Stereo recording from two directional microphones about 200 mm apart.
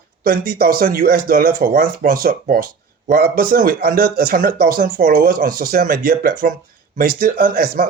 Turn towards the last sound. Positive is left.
turn(degrees=-45)  # may be behind; listen again after turning